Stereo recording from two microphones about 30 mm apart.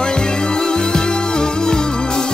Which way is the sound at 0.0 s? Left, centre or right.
Left.